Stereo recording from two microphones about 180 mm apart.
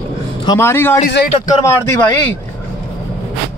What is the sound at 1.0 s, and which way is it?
Speech, 60° left (ahead or behind).